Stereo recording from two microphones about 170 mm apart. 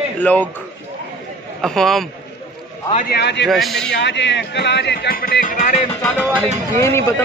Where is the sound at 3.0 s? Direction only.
80° left.